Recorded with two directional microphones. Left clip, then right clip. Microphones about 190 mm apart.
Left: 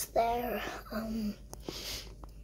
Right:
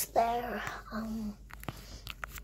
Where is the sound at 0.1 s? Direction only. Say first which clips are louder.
Even; 15° left (ahead or behind); by 1.0 s 30° left (ahead or behind).